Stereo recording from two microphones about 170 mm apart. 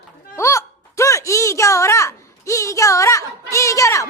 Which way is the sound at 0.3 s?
15° left (ahead or behind).